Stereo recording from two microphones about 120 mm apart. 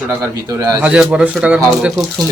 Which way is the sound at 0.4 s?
30° right (ahead or behind).